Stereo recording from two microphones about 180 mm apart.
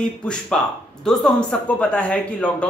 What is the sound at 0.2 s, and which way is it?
Speech, 5° left (ahead or behind).